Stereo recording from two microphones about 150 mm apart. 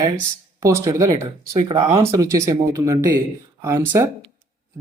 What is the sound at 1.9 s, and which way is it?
Speech, 20° right (ahead or behind).